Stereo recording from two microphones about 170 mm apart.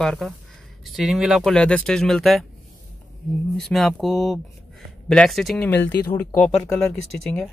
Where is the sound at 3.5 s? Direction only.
5° left (ahead or behind).